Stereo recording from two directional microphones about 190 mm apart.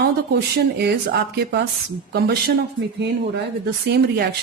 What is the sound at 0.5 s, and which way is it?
Speech, 60° right (ahead or behind).